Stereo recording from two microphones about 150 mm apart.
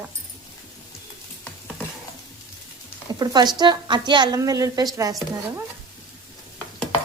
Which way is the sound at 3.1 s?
30° right (ahead or behind).